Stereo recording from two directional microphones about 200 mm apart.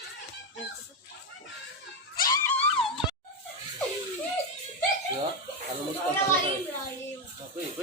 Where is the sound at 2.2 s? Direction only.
20° left (ahead or behind).